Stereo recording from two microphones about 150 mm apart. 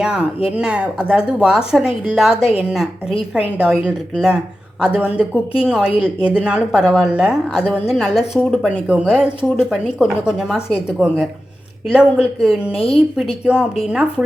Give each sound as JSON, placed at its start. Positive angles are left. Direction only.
{"t": 0.0, "sound": "a woman's voice", "side_deg": -5}
{"t": 2.3, "sound": "a woman's voice", "side_deg": 40}
{"t": 2.6, "sound": "a woman's voice", "side_deg": -5}
{"t": 12.7, "sound": "a woman's voice", "side_deg": 40}
{"t": 13.4, "sound": "speech", "side_deg": -5}